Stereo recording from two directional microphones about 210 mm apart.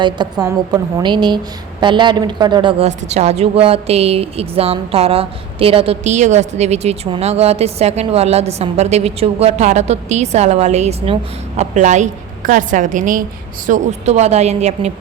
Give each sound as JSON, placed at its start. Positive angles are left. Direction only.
{"t": 0.0, "sound": "a woman's voice", "side_deg": -20}